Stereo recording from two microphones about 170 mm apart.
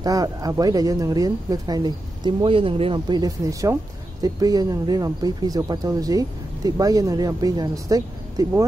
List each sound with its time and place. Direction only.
0.0 s speech: 20° right (ahead or behind)